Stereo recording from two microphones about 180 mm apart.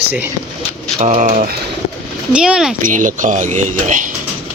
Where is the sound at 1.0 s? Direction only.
40° right (ahead or behind).